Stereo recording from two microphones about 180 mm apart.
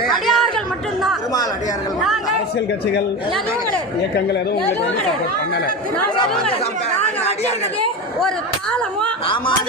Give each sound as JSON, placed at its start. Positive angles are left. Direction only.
{"t": 0.3, "sound": "chatter", "side_deg": 0}
{"t": 7.0, "sound": "a sound", "side_deg": 35}
{"t": 9.2, "sound": "speech", "side_deg": 30}